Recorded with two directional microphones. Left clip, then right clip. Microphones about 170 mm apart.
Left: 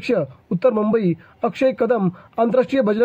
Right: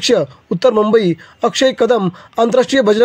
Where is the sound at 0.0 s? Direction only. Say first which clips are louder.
Right 7 dB; 40° right (ahead or behind).